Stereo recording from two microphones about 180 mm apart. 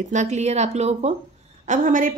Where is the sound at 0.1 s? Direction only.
40° right (ahead or behind).